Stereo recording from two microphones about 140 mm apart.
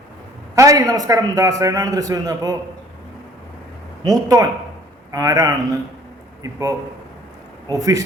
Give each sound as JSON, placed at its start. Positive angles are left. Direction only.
{"t": 0.5, "sound": "a man's voice", "side_deg": -25}
{"t": 4.0, "sound": "a man's voice", "side_deg": -25}